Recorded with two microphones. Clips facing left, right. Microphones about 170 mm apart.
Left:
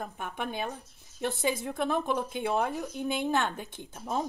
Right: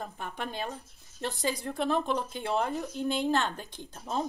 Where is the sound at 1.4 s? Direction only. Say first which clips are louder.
Even; 5° left (ahead or behind).